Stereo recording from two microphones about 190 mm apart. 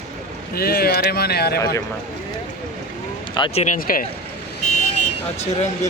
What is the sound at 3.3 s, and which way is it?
Speech, 25° left (ahead or behind).